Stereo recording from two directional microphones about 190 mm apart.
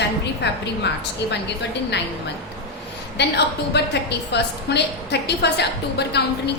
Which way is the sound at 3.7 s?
65° left (ahead or behind).